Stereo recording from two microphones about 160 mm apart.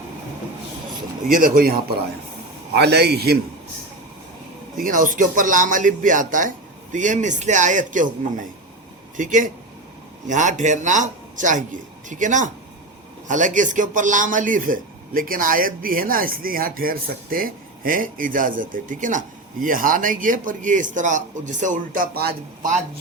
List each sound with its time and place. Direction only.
1.3 s a man's voice: 60° right (ahead or behind)
2.7 s a man's voice: 90° right
4.8 s a man's voice: 55° right (ahead or behind); by 22.4 s 75° right (ahead or behind)